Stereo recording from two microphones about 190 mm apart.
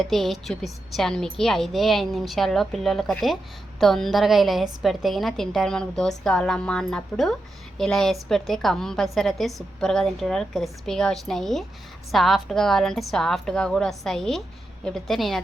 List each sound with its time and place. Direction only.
0.0 s a woman's voice: centre (ahead or behind)